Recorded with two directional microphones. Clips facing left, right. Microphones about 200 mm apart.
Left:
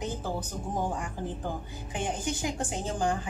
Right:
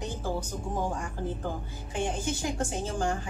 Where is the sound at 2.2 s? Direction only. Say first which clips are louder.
Right 1 dB; 15° left (ahead or behind).